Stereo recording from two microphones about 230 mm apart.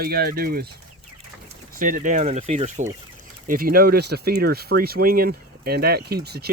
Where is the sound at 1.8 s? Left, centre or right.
Right.